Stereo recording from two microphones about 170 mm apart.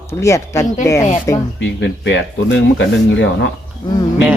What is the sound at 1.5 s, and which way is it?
Speech, 90° left.